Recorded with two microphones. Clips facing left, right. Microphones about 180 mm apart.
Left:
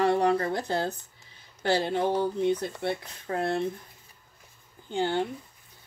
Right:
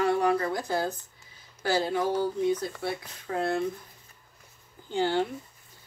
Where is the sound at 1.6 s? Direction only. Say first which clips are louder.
Left 1 dB; 25° left (ahead or behind).